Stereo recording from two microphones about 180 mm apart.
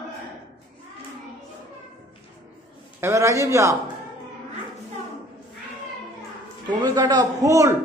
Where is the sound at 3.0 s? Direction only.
15° right (ahead or behind).